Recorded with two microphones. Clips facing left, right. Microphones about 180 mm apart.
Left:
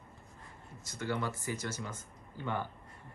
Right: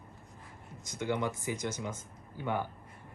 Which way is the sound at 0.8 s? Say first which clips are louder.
Right 3 dB; 15° right (ahead or behind).